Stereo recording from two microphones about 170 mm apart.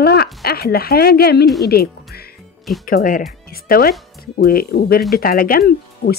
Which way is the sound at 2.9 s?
55° left (ahead or behind).